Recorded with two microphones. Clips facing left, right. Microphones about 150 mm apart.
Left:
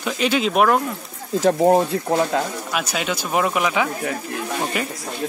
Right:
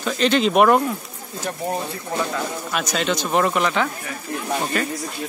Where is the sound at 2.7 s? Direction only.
10° left (ahead or behind).